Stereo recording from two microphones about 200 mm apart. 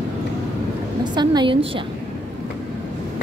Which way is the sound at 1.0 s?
20° right (ahead or behind).